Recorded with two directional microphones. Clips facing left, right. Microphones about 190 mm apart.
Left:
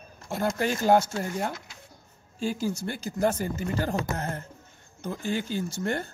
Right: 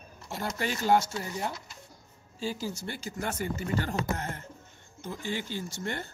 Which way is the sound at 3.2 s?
35° left (ahead or behind).